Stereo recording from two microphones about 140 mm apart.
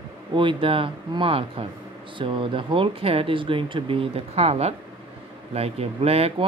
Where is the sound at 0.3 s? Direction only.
35° right (ahead or behind).